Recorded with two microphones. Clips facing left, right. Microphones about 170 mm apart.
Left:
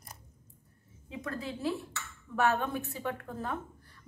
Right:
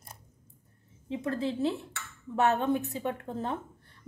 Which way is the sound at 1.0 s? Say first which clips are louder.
Right 7 dB; 30° right (ahead or behind).